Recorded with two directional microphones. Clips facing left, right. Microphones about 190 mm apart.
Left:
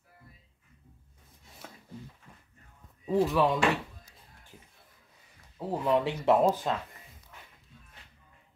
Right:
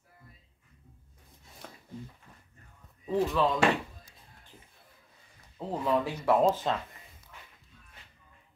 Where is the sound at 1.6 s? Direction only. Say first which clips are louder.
Even; 5° left (ahead or behind).